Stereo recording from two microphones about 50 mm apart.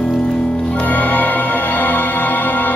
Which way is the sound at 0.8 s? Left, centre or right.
Left.